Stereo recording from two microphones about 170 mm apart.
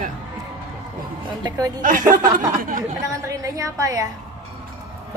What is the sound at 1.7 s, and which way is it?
Speech, 50° right (ahead or behind).